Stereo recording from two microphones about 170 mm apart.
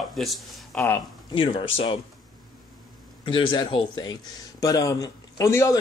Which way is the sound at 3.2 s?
30° left (ahead or behind).